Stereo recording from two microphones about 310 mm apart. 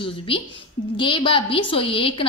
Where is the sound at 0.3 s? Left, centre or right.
Centre.